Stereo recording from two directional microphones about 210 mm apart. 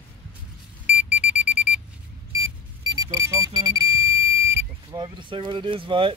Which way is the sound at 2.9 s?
15° right (ahead or behind).